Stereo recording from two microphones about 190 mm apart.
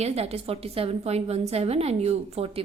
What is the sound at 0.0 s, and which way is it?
A woman's voice, 35° right (ahead or behind).